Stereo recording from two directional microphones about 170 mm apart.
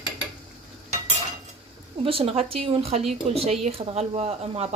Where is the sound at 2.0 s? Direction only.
35° right (ahead or behind).